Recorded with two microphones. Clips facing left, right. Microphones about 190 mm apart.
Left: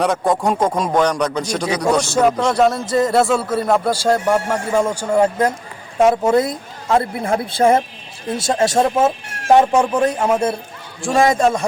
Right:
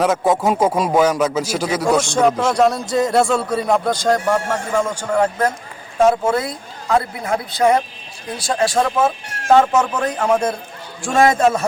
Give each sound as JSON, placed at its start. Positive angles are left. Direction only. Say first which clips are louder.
{"t": 0.0, "sound": "a man's voice", "louder": "right 1 dB", "side_deg": 0}
{"t": 11.3, "sound": "a man's voice", "louder": "even", "side_deg": 0}